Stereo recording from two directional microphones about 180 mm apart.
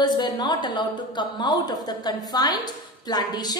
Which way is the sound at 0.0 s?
25° left (ahead or behind).